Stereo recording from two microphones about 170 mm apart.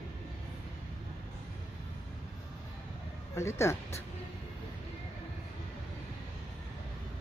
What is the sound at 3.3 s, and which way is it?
Speech, 15° left (ahead or behind).